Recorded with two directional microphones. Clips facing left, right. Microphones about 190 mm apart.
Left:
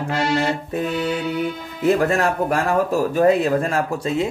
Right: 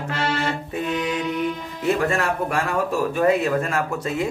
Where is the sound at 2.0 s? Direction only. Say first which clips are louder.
Left 3 dB; 40° left (ahead or behind).